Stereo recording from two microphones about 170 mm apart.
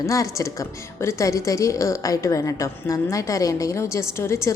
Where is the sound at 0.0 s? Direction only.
20° left (ahead or behind).